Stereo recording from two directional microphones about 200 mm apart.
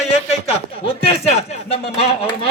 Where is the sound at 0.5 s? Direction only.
30° left (ahead or behind).